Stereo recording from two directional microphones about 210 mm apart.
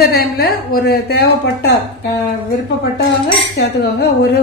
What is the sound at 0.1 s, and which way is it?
Speech, 45° left (ahead or behind).